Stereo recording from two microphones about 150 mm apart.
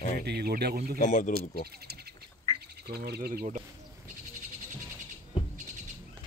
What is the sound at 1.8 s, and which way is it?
Speech, 90° right.